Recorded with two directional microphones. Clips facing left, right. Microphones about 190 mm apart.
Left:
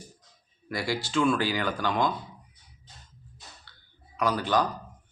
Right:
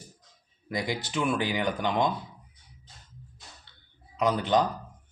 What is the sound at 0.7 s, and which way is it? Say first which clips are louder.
Speech: left 1 dB; 20° right (ahead or behind).